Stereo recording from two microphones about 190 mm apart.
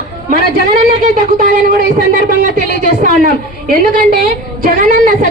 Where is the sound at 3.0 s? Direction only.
45° right (ahead or behind).